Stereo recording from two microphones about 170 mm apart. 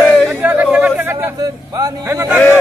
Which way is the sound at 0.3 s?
10° right (ahead or behind).